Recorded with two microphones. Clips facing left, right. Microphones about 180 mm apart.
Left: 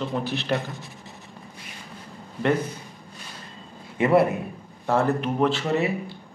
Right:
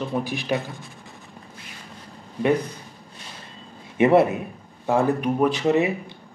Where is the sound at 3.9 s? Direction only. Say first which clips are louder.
Right 3 dB; 25° right (ahead or behind).